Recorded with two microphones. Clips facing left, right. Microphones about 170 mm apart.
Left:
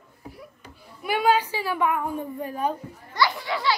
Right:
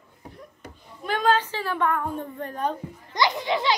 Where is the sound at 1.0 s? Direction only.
10° left (ahead or behind).